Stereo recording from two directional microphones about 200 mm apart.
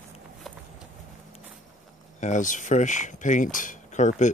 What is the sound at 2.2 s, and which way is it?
Speech, 40° left (ahead or behind).